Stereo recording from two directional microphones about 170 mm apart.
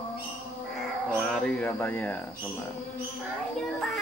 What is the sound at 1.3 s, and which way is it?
Speech, 10° left (ahead or behind).